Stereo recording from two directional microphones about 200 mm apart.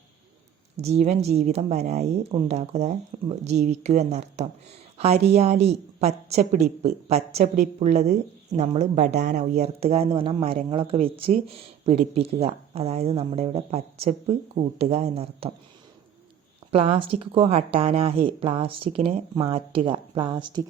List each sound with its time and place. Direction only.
0.8 s speech: 30° right (ahead or behind)
16.7 s speech: 30° right (ahead or behind)